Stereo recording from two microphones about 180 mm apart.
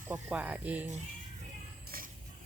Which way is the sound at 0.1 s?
5° right (ahead or behind).